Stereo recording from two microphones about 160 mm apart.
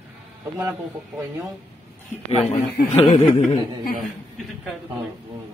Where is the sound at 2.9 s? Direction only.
40° left (ahead or behind).